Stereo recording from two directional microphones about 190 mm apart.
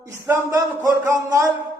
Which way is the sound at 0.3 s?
10° right (ahead or behind).